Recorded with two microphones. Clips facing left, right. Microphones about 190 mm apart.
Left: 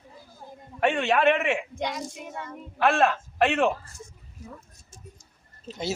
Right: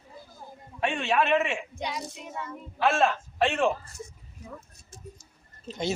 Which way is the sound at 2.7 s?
60° left (ahead or behind).